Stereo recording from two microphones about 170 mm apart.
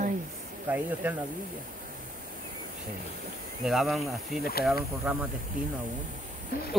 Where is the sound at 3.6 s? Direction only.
Centre (ahead or behind).